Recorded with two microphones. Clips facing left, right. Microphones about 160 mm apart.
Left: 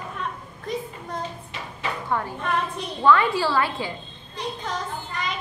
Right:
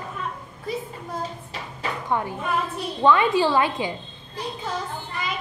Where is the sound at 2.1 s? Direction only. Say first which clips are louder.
Right 1 dB; 15° right (ahead or behind).